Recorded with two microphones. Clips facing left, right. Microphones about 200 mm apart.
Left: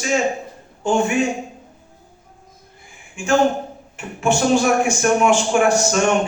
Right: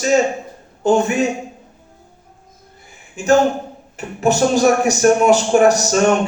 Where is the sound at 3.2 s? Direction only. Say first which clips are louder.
Right 3 dB; 40° right (ahead or behind).